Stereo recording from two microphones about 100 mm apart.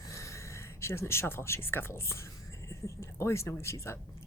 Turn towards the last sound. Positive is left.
turn(degrees=30)  # may be behind; listen again after turning